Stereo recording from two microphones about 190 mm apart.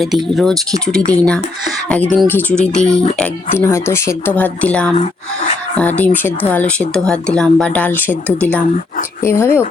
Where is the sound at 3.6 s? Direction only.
15° left (ahead or behind).